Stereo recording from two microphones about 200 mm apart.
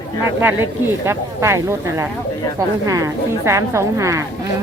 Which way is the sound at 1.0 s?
15° right (ahead or behind).